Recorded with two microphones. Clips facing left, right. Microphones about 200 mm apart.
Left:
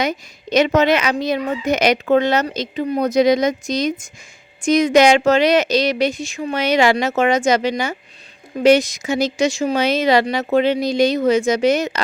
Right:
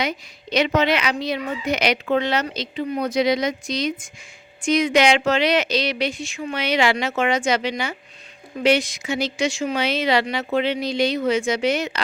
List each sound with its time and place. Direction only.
0.0 s speech: 45° left (ahead or behind)